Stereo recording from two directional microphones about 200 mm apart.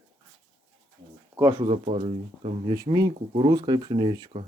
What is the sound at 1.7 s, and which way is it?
Speech, 30° right (ahead or behind).